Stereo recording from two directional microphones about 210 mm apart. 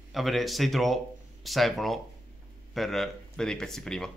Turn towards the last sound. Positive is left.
turn(degrees=5)  # may be behind; listen again after turning